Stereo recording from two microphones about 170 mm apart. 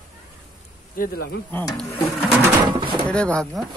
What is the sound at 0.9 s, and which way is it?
Speech, 60° left (ahead or behind).